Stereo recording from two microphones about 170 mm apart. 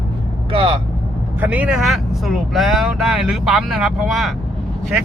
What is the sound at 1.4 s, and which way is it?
Speech, 10° right (ahead or behind).